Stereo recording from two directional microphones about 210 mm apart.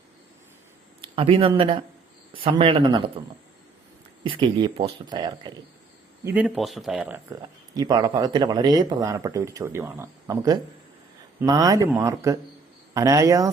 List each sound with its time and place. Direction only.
1.0 s speech: 25° right (ahead or behind)
6.2 s speech: 5° right (ahead or behind)
7.7 s speech: 20° right (ahead or behind)